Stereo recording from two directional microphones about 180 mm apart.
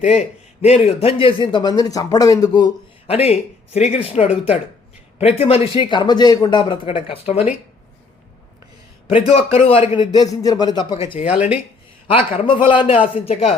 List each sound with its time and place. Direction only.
0.0 s a man's voice: 40° left (ahead or behind); by 2.6 s 20° left (ahead or behind)
3.1 s a man's voice: 35° left (ahead or behind)
9.0 s a man's voice: 30° left (ahead or behind)
11.3 s speech: 10° right (ahead or behind)
12.0 s a man's voice: 30° left (ahead or behind)